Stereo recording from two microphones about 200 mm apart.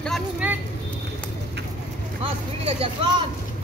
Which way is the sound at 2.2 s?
25° right (ahead or behind).